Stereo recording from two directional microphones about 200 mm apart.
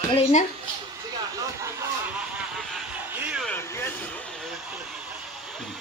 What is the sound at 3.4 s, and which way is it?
Vehicle, 10° left (ahead or behind).